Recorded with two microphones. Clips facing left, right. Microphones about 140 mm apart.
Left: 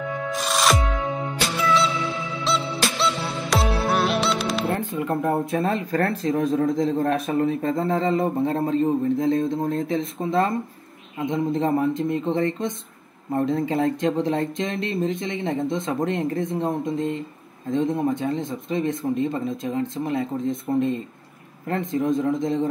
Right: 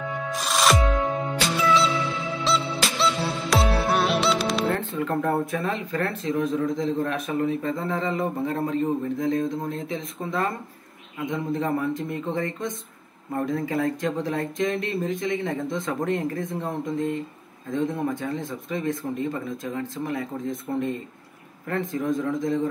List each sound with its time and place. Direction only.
0.3 s music: centre (ahead or behind)
4.7 s speech: 15° left (ahead or behind)
5.5 s a man's voice: 35° left (ahead or behind)